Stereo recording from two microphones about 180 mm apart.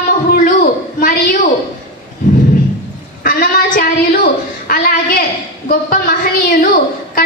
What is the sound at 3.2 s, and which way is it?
Child singing, 50° left (ahead or behind).